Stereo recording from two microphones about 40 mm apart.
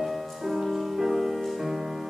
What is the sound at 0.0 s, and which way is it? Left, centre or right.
Music, centre.